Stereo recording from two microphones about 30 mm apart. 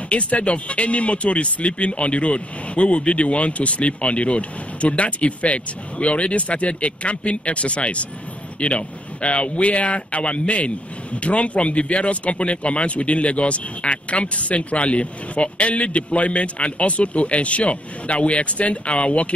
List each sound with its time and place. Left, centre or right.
0.1 s speech: left